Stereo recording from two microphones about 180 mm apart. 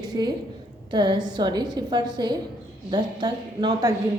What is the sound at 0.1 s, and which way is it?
A woman's voice, 20° right (ahead or behind).